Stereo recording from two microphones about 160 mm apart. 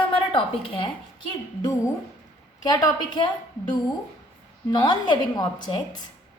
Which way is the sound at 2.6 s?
25° left (ahead or behind).